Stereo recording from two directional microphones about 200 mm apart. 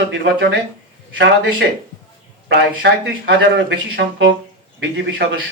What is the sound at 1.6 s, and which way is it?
Speech, 60° right (ahead or behind).